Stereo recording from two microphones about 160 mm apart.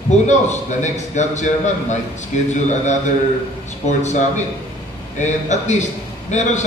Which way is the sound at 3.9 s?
45° left (ahead or behind).